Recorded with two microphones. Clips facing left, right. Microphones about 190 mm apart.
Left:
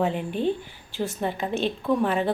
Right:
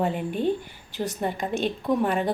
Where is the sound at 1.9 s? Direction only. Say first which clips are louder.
Even; 15° right (ahead or behind).